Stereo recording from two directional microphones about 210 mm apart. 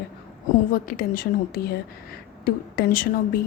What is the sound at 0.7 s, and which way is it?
A woman's voice, 40° left (ahead or behind).